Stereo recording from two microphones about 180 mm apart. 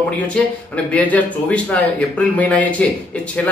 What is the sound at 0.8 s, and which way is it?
Speech, 10° left (ahead or behind).